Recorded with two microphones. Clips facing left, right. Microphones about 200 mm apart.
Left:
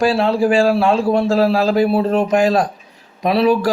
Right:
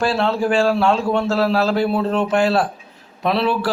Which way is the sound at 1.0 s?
35° left (ahead or behind).